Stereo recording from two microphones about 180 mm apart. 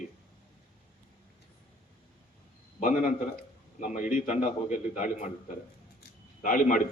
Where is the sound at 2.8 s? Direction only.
50° left (ahead or behind).